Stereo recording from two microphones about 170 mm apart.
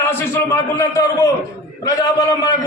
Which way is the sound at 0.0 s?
15° left (ahead or behind).